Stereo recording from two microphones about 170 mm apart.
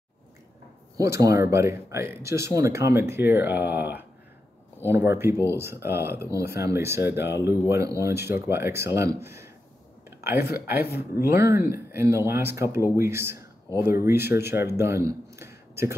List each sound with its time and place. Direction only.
0.9 s a man's voice: 20° right (ahead or behind)